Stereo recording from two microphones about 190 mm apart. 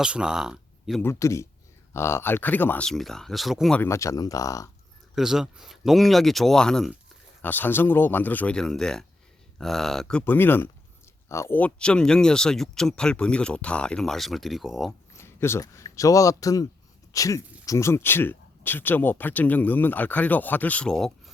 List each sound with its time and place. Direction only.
0.0 s speech: 5° right (ahead or behind)
1.0 s speech: 15° left (ahead or behind); by 3.8 s centre (ahead or behind)
3.8 s speech: 15° left (ahead or behind)
5.1 s speech: centre (ahead or behind)
15.1 s speech: 15° left (ahead or behind)